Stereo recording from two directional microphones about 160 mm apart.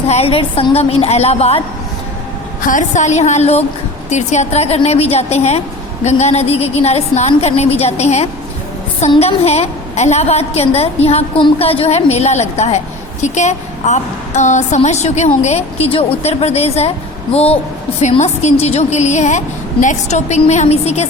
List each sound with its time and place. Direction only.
0.1 s a woman's voice: 40° left (ahead or behind)
2.6 s a woman's voice: 55° left (ahead or behind)